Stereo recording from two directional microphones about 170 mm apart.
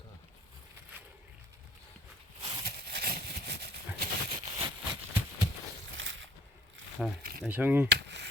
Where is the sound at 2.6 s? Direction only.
65° right (ahead or behind).